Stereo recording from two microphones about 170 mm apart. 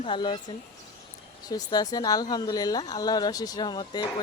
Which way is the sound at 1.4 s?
25° left (ahead or behind).